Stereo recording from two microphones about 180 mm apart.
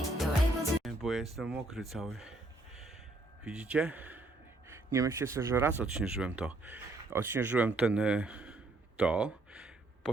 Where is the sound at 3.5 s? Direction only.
5° right (ahead or behind).